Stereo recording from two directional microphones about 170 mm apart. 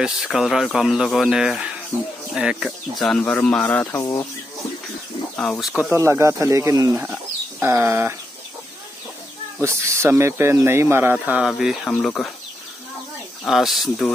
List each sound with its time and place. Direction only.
0.0 s speech: centre (ahead or behind); by 4.2 s 15° left (ahead or behind)
5.3 s speech: 5° left (ahead or behind)
5.9 s speech: 15° right (ahead or behind)
9.6 s speech: 15° right (ahead or behind); by 12.3 s 5° left (ahead or behind)
13.5 s speech: centre (ahead or behind)